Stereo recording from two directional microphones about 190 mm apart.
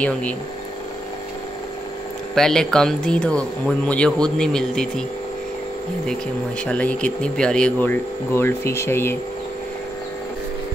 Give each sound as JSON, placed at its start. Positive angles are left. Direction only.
{"t": 2.3, "sound": "speech", "side_deg": 5}
{"t": 6.6, "sound": "speech", "side_deg": 5}